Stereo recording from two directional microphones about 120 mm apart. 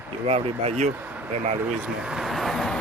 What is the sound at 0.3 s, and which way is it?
Speech, 55° right (ahead or behind).